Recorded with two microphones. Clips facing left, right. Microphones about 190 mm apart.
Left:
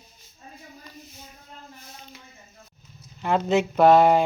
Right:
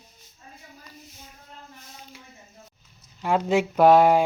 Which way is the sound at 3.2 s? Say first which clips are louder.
Even; 10° right (ahead or behind).